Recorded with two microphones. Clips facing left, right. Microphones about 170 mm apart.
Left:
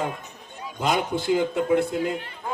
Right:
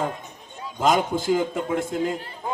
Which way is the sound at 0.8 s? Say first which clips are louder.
Right 3 dB; 45° right (ahead or behind).